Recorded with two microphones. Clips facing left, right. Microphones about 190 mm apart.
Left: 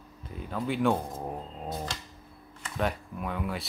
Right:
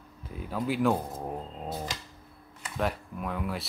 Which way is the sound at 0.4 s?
5° right (ahead or behind).